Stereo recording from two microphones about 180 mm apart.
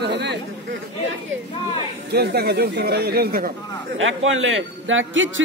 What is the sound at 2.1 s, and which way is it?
Speech, 65° right (ahead or behind).